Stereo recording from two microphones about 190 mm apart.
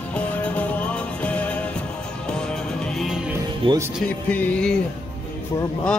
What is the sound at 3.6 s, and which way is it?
Speech, 30° right (ahead or behind).